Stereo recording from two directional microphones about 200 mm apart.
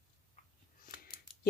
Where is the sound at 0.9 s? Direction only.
45° left (ahead or behind).